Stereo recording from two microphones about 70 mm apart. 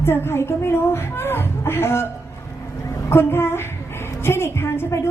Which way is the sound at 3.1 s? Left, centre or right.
Left.